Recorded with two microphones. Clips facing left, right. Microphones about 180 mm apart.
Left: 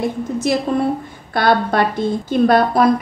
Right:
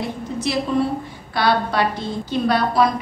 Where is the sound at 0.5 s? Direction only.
50° left (ahead or behind).